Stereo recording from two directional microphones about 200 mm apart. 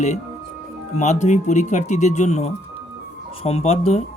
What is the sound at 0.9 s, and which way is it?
Speech, 35° left (ahead or behind).